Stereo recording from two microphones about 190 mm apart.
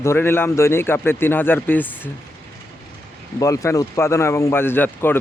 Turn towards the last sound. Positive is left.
turn(degrees=10)  # may be behind; listen again after turning